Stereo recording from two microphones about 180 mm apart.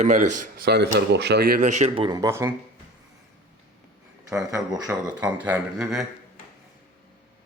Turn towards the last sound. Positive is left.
turn(degrees=0)  # may be behind; listen again after turning